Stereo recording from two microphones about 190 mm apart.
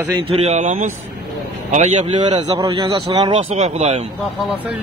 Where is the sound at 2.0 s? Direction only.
25° right (ahead or behind).